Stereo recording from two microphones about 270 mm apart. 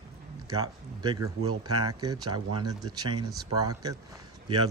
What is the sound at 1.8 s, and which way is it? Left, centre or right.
Speech, centre.